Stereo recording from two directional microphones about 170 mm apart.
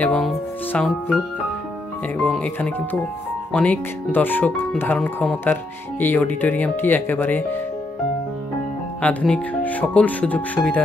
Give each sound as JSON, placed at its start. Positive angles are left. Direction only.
{"t": 0.0, "sound": "speech", "side_deg": 5}
{"t": 2.2, "sound": "speech", "side_deg": 5}
{"t": 9.0, "sound": "speech", "side_deg": 5}